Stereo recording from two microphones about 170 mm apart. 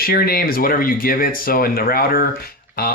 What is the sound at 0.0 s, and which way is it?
Speech, 60° left (ahead or behind).